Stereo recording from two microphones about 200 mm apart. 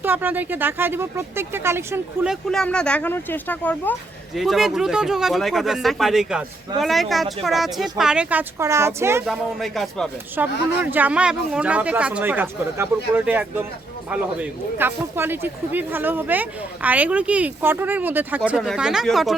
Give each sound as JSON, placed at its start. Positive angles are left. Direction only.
{"t": 0.0, "sound": "a man's voice", "side_deg": -10}
{"t": 2.3, "sound": "speech", "side_deg": 0}
{"t": 9.2, "sound": "a man's voice", "side_deg": 0}